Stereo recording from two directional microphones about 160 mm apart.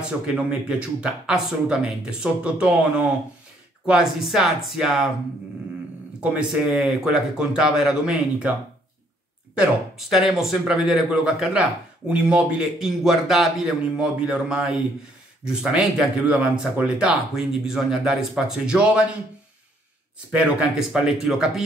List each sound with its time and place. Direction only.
0.5 s speech: 5° right (ahead or behind)
6.3 s speech: 5° right (ahead or behind)
9.6 s speech: centre (ahead or behind)
20.2 s speech: 5° right (ahead or behind)